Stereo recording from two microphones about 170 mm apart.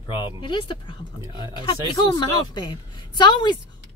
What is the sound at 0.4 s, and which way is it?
Speech, 30° left (ahead or behind).